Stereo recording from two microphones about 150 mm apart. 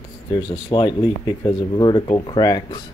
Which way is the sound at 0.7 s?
30° left (ahead or behind).